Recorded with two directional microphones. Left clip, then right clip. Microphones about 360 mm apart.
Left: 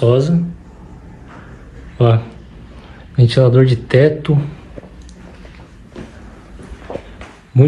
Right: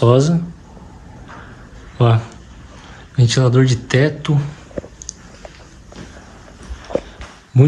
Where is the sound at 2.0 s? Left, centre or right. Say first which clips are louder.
Left 2 dB; centre.